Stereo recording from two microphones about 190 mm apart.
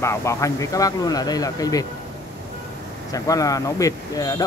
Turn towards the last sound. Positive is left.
turn(degrees=20)  # may be behind; listen again after turning